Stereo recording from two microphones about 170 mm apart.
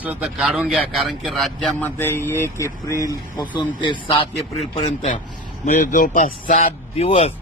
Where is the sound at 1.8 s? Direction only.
10° left (ahead or behind).